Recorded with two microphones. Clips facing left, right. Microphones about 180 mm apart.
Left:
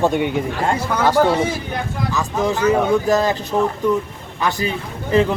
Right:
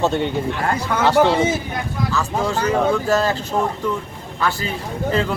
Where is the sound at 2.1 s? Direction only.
15° left (ahead or behind).